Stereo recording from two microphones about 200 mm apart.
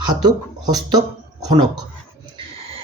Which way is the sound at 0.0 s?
20° right (ahead or behind).